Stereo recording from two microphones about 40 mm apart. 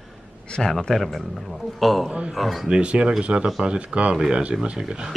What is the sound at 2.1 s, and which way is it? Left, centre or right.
Speech, right.